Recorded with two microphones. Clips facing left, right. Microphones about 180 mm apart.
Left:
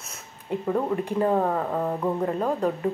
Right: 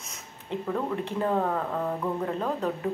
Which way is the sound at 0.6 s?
20° left (ahead or behind).